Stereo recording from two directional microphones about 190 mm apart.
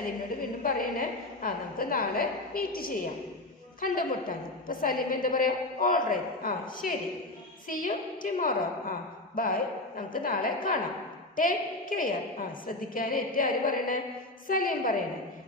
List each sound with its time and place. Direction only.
0.7 s a woman's voice: 50° left (ahead or behind)